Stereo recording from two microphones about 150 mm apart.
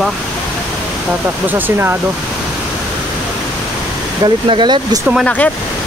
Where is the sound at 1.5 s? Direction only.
15° right (ahead or behind).